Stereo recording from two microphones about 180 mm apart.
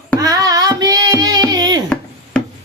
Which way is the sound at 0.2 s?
20° right (ahead or behind).